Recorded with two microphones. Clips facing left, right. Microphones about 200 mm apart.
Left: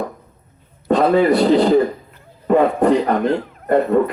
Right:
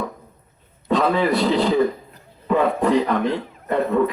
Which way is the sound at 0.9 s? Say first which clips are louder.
Left 5 dB; 50° left (ahead or behind).